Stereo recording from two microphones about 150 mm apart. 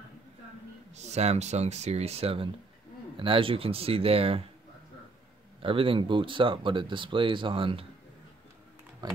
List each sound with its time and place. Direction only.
0.9 s speech: 45° right (ahead or behind)
5.6 s speech: 35° right (ahead or behind)